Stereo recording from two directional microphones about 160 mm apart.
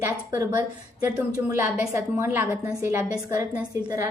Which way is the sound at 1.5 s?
15° right (ahead or behind).